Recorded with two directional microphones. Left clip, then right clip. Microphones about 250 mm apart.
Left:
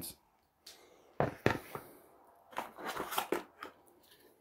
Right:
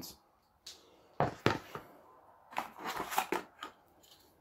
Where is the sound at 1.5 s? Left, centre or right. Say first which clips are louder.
Right 1 dB; centre.